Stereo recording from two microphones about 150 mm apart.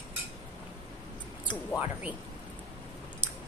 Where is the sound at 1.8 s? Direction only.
10° right (ahead or behind).